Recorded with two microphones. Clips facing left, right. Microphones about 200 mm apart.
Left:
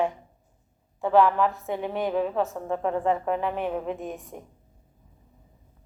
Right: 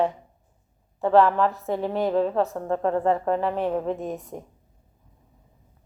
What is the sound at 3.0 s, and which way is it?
Speech, 35° right (ahead or behind).